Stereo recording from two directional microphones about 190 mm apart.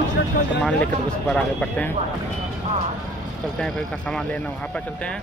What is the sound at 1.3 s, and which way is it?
Speech, 5° left (ahead or behind).